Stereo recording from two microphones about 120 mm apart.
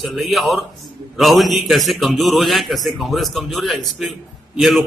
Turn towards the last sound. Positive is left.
turn(degrees=0)  # may be behind; listen again after turning